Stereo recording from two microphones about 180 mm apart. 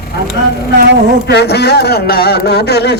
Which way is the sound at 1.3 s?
65° left (ahead or behind).